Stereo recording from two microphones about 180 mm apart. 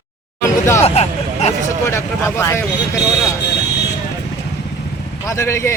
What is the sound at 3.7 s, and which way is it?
Vehicle, 70° left (ahead or behind).